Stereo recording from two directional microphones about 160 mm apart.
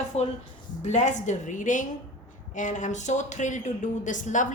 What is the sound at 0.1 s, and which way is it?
A woman's voice, 40° left (ahead or behind).